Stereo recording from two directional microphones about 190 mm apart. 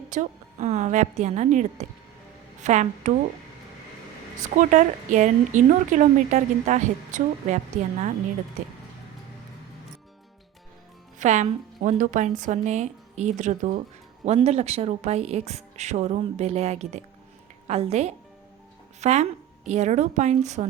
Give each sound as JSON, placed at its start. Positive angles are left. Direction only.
{"t": 0.1, "sound": "speech", "side_deg": -40}
{"t": 4.5, "sound": "speech", "side_deg": -40}
{"t": 11.2, "sound": "speech", "side_deg": -40}